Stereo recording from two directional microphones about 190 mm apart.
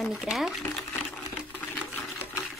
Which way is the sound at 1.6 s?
10° left (ahead or behind).